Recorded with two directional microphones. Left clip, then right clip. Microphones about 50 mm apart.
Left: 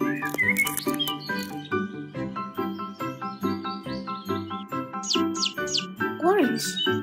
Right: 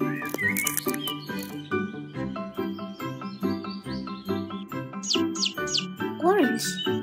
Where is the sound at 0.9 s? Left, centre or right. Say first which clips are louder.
Left 2 dB; left.